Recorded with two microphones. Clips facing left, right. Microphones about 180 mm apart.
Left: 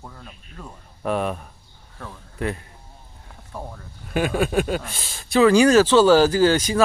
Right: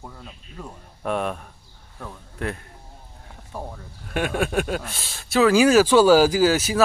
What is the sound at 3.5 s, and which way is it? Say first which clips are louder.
Speech: right 1 dB; 10° right (ahead or behind).